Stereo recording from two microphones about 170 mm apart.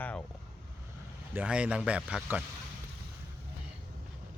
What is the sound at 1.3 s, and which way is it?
Speech, 5° right (ahead or behind).